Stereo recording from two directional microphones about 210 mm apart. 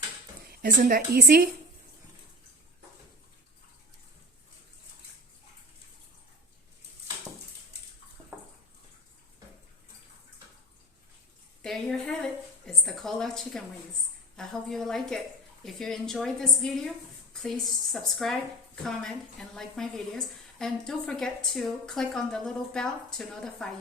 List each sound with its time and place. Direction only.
0.6 s a woman's voice: 45° right (ahead or behind)
11.6 s a sound: centre (ahead or behind)
14.3 s a woman's voice: centre (ahead or behind)